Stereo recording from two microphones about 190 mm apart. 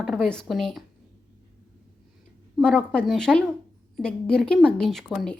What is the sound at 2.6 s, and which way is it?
Speech, 5° left (ahead or behind).